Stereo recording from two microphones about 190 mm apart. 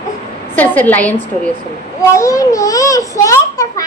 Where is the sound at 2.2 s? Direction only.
15° left (ahead or behind).